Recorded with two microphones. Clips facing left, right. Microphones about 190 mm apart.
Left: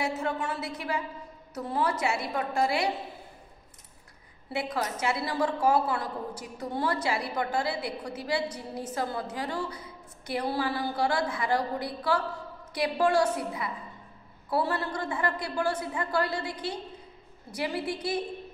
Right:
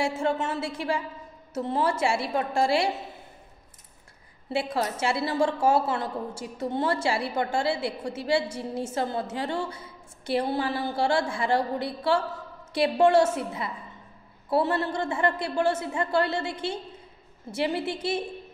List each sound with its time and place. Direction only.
0.0 s a woman's voice: 25° right (ahead or behind)
4.5 s a woman's voice: 30° right (ahead or behind)